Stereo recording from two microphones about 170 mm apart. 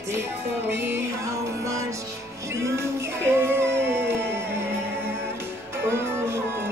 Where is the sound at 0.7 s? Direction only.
15° right (ahead or behind).